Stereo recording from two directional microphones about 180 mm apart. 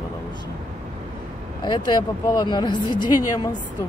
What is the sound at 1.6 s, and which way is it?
Speech, 25° left (ahead or behind).